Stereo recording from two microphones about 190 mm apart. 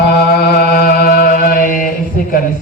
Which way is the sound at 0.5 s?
55° left (ahead or behind).